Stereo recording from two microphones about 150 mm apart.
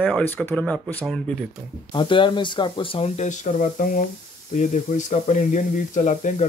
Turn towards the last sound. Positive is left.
turn(degrees=55)  # may be behind; listen again after turning